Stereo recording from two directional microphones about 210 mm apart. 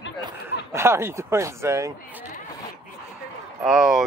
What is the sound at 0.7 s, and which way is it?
Speech, 10° right (ahead or behind).